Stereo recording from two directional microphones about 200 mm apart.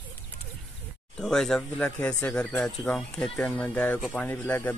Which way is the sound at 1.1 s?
5° left (ahead or behind).